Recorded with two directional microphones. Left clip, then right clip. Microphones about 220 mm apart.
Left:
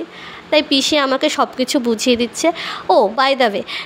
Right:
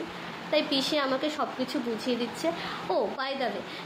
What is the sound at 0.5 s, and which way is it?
Speech, 45° left (ahead or behind).